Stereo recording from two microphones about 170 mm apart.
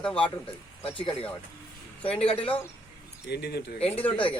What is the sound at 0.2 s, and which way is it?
A man's voice, 30° left (ahead or behind).